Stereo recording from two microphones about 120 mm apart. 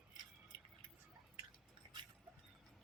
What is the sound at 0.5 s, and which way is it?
Vehicle, 40° right (ahead or behind).